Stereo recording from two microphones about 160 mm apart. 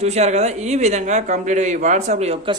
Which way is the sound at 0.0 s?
45° right (ahead or behind).